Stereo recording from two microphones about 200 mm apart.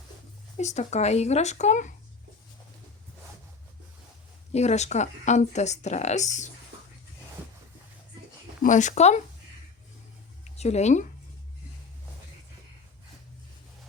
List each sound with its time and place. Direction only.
0.5 s speech: 35° left (ahead or behind)
4.5 s speech: 35° left (ahead or behind)
8.6 s speech: 40° left (ahead or behind)
10.6 s speech: 35° left (ahead or behind)